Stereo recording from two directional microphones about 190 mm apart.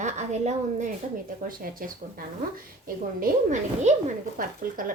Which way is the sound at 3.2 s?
40° right (ahead or behind).